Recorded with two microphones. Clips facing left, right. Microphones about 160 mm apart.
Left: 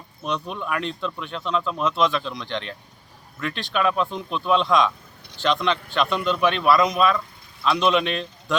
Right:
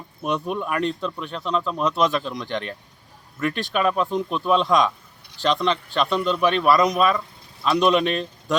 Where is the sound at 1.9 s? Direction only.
40° right (ahead or behind).